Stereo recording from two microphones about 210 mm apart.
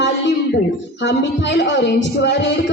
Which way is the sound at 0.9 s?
55° left (ahead or behind).